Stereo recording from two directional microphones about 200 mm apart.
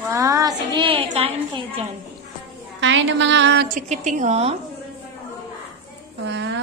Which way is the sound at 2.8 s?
65° right (ahead or behind).